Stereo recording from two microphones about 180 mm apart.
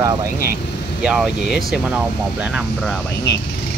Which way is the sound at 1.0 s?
5° right (ahead or behind).